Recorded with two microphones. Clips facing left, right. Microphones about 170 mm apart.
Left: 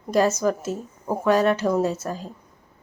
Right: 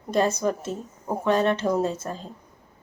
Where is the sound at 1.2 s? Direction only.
25° right (ahead or behind).